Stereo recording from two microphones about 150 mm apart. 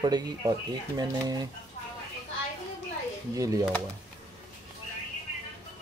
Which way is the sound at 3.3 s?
20° right (ahead or behind).